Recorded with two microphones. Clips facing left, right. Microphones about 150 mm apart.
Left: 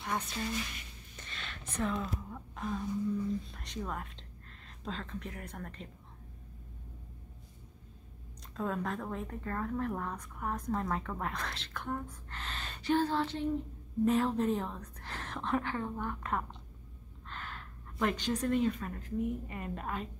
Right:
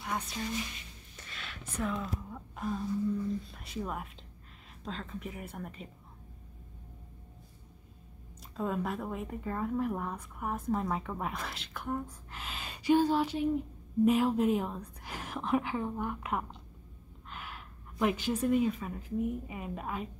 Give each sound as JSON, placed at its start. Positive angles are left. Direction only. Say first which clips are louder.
{"t": 0.0, "sound": "speech", "louder": "even", "side_deg": -5}
{"t": 8.5, "sound": "a woman's voice", "louder": "right 2 dB", "side_deg": -5}